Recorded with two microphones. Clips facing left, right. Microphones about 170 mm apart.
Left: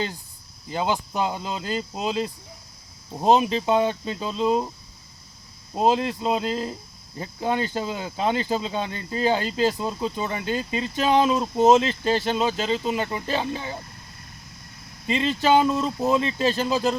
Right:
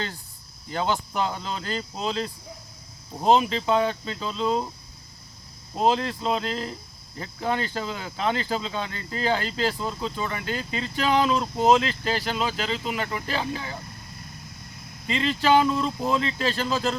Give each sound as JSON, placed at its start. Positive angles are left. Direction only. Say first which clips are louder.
{"t": 0.7, "sound": "speech", "louder": "left 1 dB", "side_deg": 15}
{"t": 5.7, "sound": "speech", "louder": "left 2 dB", "side_deg": 15}
{"t": 15.0, "sound": "speech", "louder": "left 2 dB", "side_deg": 20}